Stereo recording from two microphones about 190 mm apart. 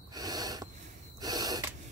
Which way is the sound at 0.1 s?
20° right (ahead or behind).